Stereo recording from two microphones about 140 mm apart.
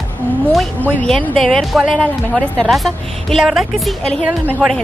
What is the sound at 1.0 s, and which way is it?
Speech, 5° left (ahead or behind).